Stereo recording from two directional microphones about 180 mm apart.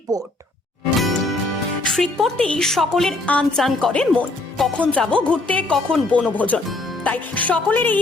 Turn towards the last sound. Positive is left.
turn(degrees=10)  # may be behind; listen again after turning